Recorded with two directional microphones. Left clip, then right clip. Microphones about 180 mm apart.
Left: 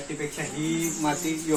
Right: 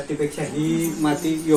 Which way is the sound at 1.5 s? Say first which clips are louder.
Right 8 dB; centre (ahead or behind).